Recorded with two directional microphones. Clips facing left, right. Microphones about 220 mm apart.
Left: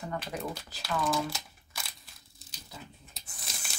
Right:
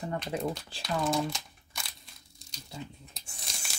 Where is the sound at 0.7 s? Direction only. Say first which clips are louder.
Right 1 dB; 30° right (ahead or behind).